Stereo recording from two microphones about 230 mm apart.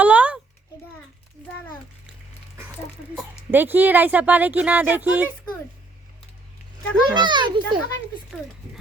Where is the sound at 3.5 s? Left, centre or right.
Centre.